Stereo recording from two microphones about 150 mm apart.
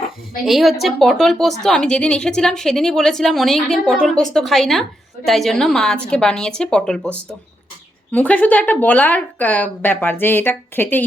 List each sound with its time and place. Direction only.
0.4 s a woman's voice: centre (ahead or behind)